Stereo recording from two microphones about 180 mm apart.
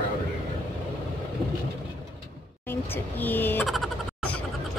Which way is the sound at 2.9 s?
10° left (ahead or behind).